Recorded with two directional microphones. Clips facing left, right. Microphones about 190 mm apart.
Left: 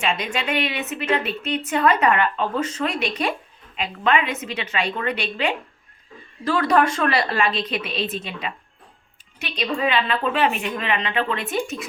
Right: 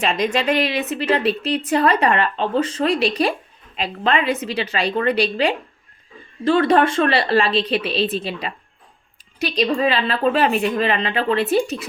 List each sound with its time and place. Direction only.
0.0 s a woman's voice: 40° right (ahead or behind)